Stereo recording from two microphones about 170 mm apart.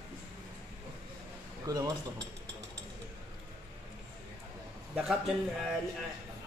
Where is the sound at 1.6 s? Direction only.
20° right (ahead or behind).